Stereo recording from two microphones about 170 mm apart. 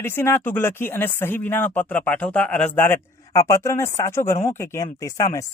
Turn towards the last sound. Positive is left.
turn(degrees=20)  # may be behind; listen again after turning